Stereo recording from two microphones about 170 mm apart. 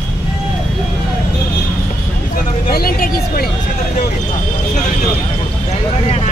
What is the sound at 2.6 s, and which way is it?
Speech, 60° left (ahead or behind).